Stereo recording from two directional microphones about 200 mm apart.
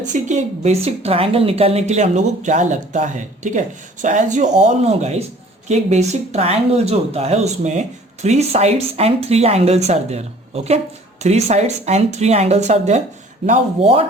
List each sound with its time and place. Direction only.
0.0 s speech: 40° right (ahead or behind)